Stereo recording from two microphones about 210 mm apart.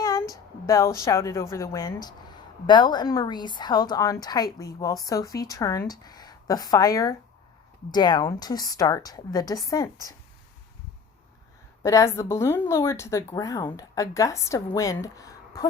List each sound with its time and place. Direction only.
0.0 s a woman's voice: 15° left (ahead or behind)
11.8 s a woman's voice: 15° left (ahead or behind)